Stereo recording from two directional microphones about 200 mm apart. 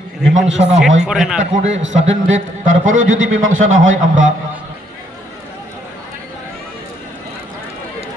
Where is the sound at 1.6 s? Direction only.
70° right (ahead or behind).